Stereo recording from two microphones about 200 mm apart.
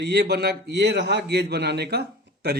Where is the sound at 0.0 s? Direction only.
55° right (ahead or behind).